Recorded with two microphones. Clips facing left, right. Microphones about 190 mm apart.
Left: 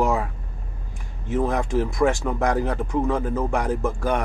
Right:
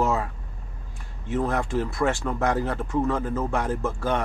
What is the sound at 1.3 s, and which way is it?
Speech, 15° left (ahead or behind).